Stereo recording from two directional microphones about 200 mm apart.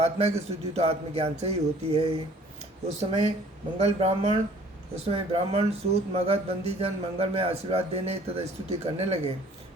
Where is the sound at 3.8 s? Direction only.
30° right (ahead or behind).